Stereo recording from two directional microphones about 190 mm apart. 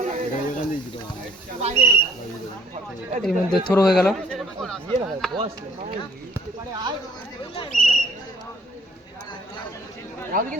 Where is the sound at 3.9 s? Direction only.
Centre (ahead or behind).